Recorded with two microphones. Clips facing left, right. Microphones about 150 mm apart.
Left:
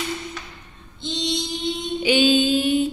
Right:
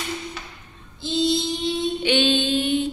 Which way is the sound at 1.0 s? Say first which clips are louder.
Right 5 dB; 5° right (ahead or behind).